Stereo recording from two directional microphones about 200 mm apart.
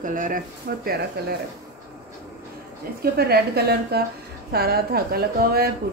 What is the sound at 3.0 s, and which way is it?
A woman's voice, 50° right (ahead or behind).